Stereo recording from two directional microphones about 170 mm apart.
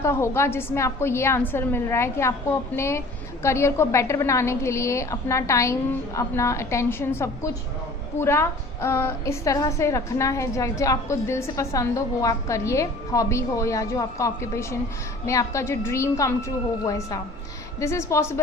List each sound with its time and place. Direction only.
0.0 s a woman's voice: 15° left (ahead or behind)